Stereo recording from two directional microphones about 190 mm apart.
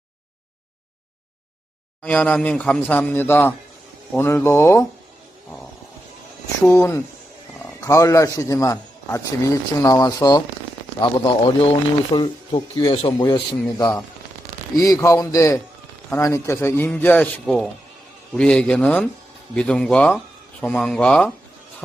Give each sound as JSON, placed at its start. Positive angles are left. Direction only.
{"t": 2.0, "sound": "a man's voice", "side_deg": 5}
{"t": 6.7, "sound": "a man's voice", "side_deg": 15}